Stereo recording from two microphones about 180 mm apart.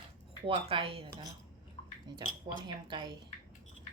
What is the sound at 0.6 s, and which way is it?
Speech, 30° right (ahead or behind).